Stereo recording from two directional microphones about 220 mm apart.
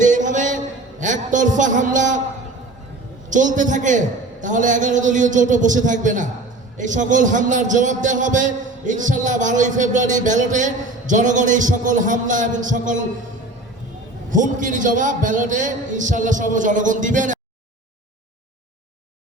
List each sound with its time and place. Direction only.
0.0 s a sound: 35° right (ahead or behind)
3.2 s a man's voice: 35° right (ahead or behind)
14.3 s a man's voice: 35° right (ahead or behind)